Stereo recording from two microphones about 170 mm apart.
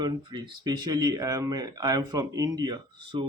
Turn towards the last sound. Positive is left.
turn(degrees=-25)  # may be behind; listen again after turning